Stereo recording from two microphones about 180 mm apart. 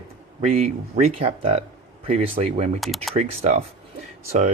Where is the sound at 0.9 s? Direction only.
35° right (ahead or behind).